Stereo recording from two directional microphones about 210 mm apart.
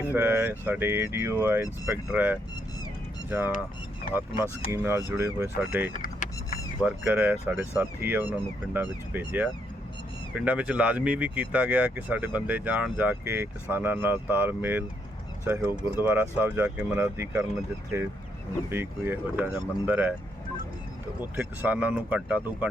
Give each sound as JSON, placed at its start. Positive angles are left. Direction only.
{"t": 0.0, "sound": "speech", "side_deg": -10}
{"t": 4.1, "sound": "speech", "side_deg": 45}
{"t": 4.7, "sound": "speech", "side_deg": -10}
{"t": 5.8, "sound": "speech", "side_deg": 40}
{"t": 6.8, "sound": "speech", "side_deg": -5}
{"t": 21.2, "sound": "speech", "side_deg": -10}